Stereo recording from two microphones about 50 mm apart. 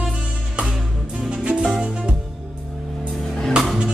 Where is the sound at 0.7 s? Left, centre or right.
Centre.